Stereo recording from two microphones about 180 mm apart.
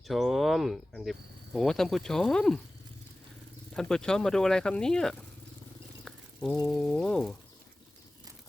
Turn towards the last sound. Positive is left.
turn(degrees=5)  # may be behind; listen again after turning